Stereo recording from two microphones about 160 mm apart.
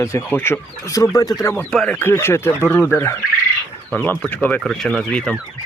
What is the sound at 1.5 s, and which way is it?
Speech, 10° left (ahead or behind).